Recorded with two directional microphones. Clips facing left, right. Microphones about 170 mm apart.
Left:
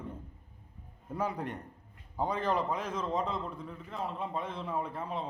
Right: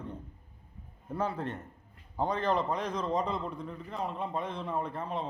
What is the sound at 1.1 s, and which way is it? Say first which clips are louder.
A man's voice: right 1 dB; 10° left (ahead or behind).